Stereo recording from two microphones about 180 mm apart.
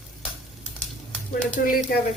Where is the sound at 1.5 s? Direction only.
50° left (ahead or behind).